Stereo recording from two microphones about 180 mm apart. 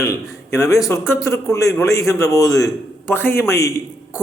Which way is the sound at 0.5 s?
15° left (ahead or behind).